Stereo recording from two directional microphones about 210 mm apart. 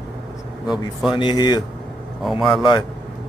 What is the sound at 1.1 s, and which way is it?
Speech, 20° left (ahead or behind).